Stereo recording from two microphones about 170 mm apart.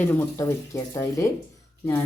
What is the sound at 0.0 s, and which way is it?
Speech, 10° left (ahead or behind).